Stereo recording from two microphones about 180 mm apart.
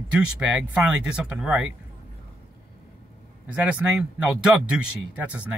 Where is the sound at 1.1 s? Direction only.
5° right (ahead or behind).